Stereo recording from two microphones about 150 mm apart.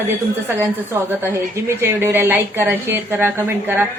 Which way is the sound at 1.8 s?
15° right (ahead or behind).